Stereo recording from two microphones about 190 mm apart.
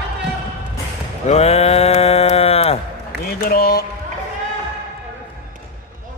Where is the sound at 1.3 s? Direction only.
35° left (ahead or behind).